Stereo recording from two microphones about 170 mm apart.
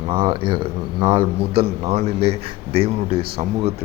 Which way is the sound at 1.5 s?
35° right (ahead or behind).